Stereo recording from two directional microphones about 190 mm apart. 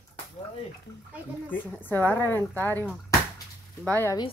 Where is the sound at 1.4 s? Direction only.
10° left (ahead or behind).